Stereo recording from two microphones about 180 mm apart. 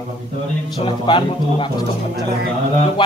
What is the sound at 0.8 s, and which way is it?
Speech, 30° left (ahead or behind).